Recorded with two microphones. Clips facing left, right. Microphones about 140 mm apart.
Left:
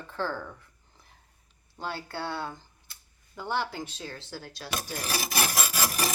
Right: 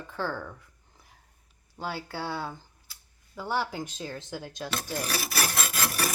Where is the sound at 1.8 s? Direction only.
5° right (ahead or behind).